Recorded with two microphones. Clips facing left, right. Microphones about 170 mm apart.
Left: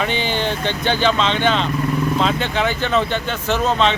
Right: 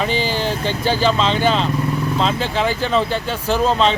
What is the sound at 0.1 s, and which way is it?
Speech, 35° right (ahead or behind).